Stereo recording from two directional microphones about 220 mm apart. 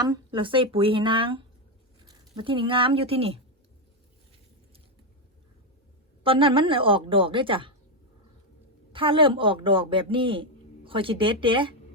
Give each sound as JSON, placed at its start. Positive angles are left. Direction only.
{"t": 0.0, "sound": "speech", "side_deg": -20}
{"t": 6.2, "sound": "speech", "side_deg": -25}
{"t": 8.9, "sound": "speech", "side_deg": -25}